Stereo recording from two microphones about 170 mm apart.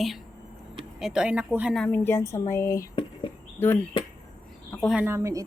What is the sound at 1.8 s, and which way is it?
Speech, 10° left (ahead or behind).